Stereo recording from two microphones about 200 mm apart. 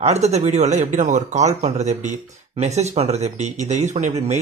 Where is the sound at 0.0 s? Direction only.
35° right (ahead or behind).